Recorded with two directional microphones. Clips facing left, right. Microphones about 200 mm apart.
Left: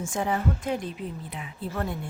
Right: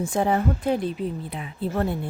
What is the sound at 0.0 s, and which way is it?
Speech, 35° right (ahead or behind).